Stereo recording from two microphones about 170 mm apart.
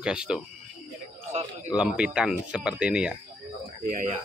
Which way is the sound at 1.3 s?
40° right (ahead or behind).